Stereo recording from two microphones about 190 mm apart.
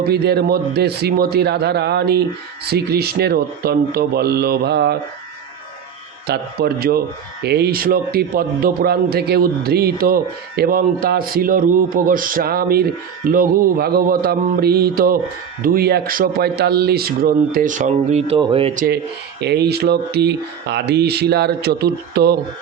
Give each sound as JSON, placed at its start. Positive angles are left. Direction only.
{"t": 0.1, "sound": "speech", "side_deg": -60}
{"t": 6.2, "sound": "a man's voice", "side_deg": -60}
{"t": 19.4, "sound": "speech", "side_deg": -60}